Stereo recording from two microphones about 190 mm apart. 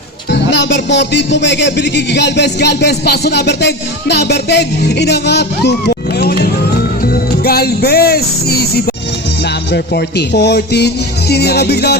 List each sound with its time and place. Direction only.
0.3 s speech: 65° left (ahead or behind)